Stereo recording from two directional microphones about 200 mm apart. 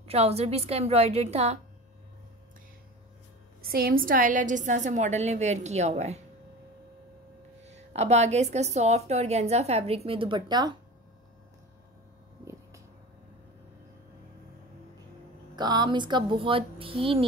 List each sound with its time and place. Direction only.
0.0 s a woman's voice: 30° right (ahead or behind)
3.7 s a woman's voice: 45° right (ahead or behind)
7.6 s a woman's voice: 35° right (ahead or behind)
15.5 s speech: 20° right (ahead or behind)